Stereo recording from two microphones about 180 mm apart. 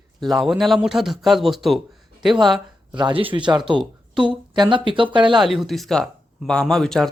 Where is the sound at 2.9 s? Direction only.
25° right (ahead or behind).